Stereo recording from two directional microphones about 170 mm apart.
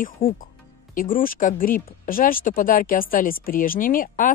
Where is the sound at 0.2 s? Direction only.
55° left (ahead or behind).